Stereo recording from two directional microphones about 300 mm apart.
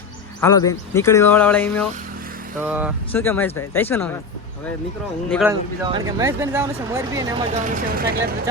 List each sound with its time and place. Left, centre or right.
0.4 s speech: centre
2.6 s speech: centre
3.1 s speech: centre
5.3 s speech: centre
7.7 s speech: right